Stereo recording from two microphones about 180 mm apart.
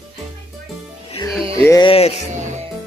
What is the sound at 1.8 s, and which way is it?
Speech, 35° left (ahead or behind).